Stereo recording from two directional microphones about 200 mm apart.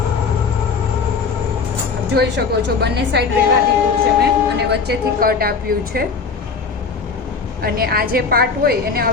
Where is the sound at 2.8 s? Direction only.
55° right (ahead or behind).